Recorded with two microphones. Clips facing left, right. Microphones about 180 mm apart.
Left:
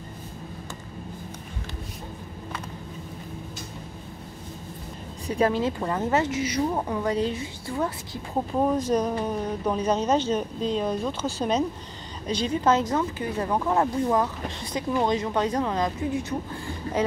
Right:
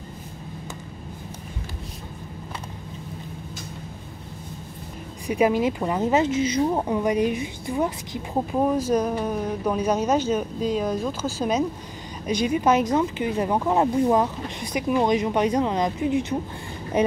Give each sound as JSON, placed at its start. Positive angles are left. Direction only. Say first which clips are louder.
{"t": 5.2, "sound": "speech", "louder": "right 3 dB", "side_deg": -10}
{"t": 8.5, "sound": "speech", "louder": "right 1 dB", "side_deg": -5}